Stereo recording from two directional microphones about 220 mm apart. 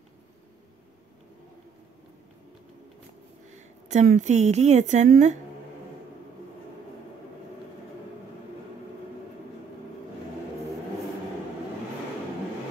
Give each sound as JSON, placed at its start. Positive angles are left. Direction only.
{"t": 3.5, "sound": "a woman's voice", "side_deg": -35}